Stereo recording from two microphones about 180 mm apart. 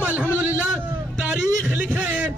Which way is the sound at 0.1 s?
10° left (ahead or behind).